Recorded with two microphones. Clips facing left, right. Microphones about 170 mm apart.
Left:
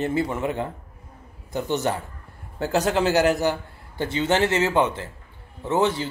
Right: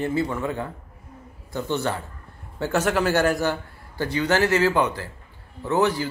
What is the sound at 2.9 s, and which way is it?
Speech, 20° left (ahead or behind).